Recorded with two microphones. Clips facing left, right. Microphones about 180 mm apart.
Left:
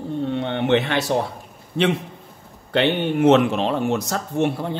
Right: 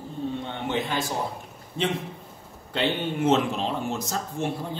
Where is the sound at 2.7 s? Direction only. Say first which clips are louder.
Left 7 dB; 65° left (ahead or behind).